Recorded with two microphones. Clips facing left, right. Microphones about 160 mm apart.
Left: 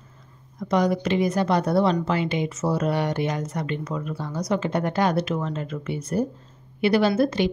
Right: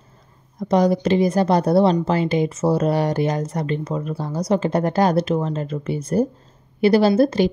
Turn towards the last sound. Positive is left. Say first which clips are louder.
# right 5 dB
turn(degrees=-35)  # may be behind; listen again after turning